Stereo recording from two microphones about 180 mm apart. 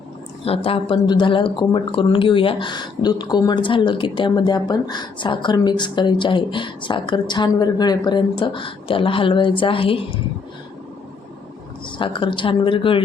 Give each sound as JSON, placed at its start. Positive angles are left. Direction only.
{"t": 0.4, "sound": "speech", "side_deg": 30}
{"t": 11.9, "sound": "speech", "side_deg": 30}